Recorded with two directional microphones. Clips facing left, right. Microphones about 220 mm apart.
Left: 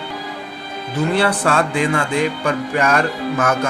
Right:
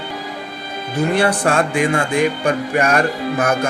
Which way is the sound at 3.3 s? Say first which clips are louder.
Even; 35° right (ahead or behind).